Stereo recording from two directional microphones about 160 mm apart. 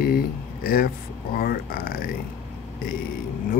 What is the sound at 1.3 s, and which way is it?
Speech, 70° left (ahead or behind).